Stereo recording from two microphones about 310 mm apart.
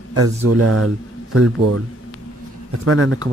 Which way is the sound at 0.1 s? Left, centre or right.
Right.